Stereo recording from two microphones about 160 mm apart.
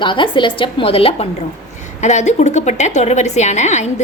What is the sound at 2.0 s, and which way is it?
A woman's voice, 45° left (ahead or behind).